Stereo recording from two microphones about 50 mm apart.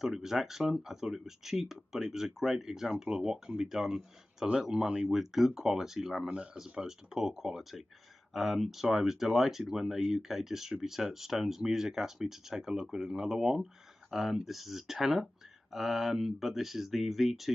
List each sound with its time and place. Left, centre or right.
0.0 s speech: centre
6.2 s speech: right; by 17.5 s centre